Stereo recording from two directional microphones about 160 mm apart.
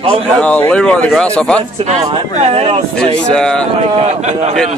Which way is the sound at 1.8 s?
45° right (ahead or behind).